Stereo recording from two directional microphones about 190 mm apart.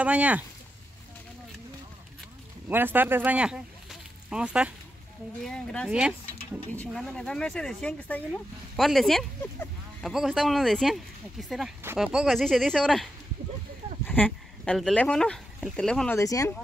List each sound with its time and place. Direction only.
0.0 s speech: 5° right (ahead or behind)
2.7 s speech: 10° right (ahead or behind)
16.2 s speech: 15° left (ahead or behind)